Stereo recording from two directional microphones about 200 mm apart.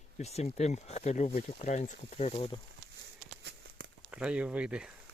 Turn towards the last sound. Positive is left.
turn(degrees=-5)  # may be behind; listen again after turning